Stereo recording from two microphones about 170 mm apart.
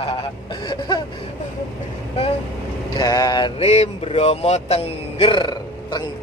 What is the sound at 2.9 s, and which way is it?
Speech, 20° left (ahead or behind).